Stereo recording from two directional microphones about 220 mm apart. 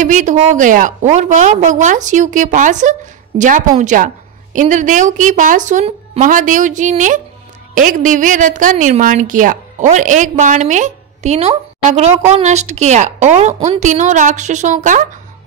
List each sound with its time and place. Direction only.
0.0 s a woman's voice: 35° right (ahead or behind)